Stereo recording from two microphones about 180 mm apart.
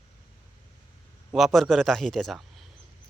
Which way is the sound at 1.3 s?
5° right (ahead or behind).